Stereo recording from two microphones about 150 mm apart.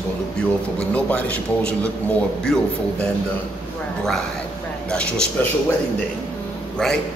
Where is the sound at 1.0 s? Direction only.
10° left (ahead or behind).